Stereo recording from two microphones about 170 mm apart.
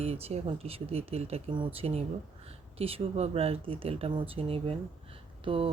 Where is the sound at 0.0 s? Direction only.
35° right (ahead or behind).